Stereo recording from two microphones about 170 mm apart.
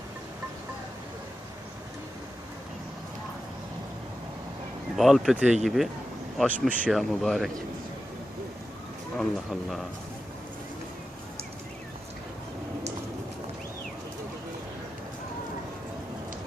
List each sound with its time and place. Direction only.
4.9 s speech: centre (ahead or behind)
9.1 s speech: centre (ahead or behind)